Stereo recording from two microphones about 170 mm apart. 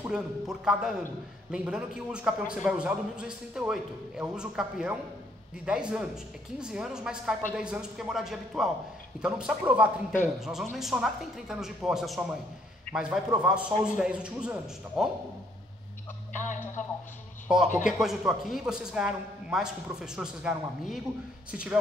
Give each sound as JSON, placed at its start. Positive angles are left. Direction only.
{"t": 0.0, "sound": "a man's voice", "side_deg": -5}
{"t": 16.3, "sound": "a sound", "side_deg": 45}
{"t": 17.6, "sound": "a man's voice", "side_deg": 50}
{"t": 18.0, "sound": "a man's voice", "side_deg": 0}